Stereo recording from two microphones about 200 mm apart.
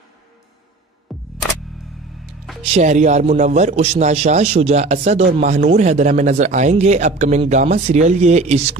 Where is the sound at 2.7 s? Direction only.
35° right (ahead or behind).